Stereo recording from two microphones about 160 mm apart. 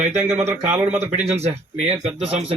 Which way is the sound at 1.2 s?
40° right (ahead or behind).